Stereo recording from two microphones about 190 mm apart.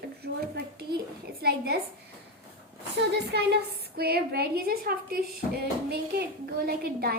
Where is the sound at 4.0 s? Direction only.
55° right (ahead or behind).